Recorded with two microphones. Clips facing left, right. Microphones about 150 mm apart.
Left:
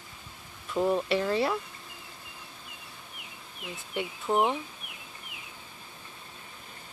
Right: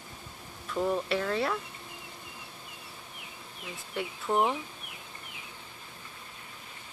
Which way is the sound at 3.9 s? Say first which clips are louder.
Left 1 dB; centre (ahead or behind).